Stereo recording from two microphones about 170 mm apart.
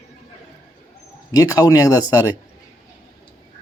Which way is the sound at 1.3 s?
20° left (ahead or behind).